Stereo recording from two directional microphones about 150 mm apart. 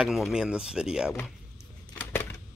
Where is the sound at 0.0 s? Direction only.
5° right (ahead or behind).